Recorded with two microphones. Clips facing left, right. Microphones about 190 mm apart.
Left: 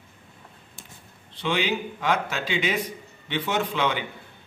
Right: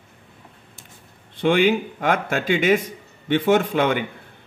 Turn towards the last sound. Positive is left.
turn(degrees=-50)  # may be behind; listen again after turning